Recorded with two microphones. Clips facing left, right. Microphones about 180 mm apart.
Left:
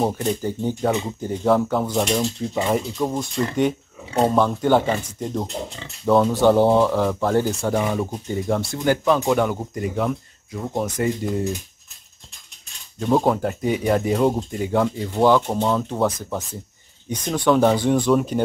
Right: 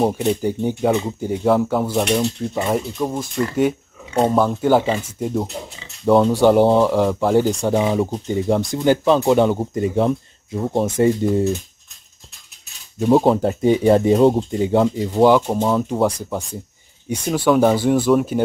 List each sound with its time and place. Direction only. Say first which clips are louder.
0.0 s speech: right 4 dB; 10° right (ahead or behind)
4.3 s speech: right 2 dB; 5° right (ahead or behind); by 11.4 s 25° right (ahead or behind)
13.1 s speech: right 4 dB; 25° right (ahead or behind)
17.1 s speech: right 2 dB; 10° right (ahead or behind)